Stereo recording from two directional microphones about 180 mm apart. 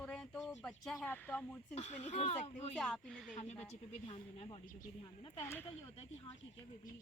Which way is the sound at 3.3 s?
35° left (ahead or behind).